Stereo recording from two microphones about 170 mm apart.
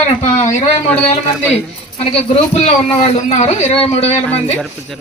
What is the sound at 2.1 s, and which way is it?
A man's voice, 35° left (ahead or behind).